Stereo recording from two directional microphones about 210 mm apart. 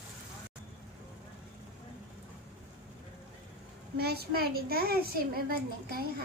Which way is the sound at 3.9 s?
50° right (ahead or behind).